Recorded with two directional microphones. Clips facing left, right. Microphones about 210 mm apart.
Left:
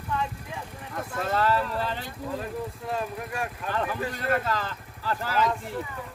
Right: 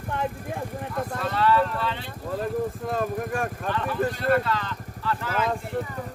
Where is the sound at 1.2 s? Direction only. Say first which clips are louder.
Right 2 dB; 45° left (ahead or behind).